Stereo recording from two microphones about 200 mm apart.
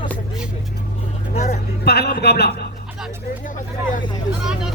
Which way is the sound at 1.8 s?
55° left (ahead or behind).